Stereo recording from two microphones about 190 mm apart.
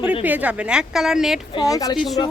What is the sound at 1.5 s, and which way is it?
Speech, 20° left (ahead or behind).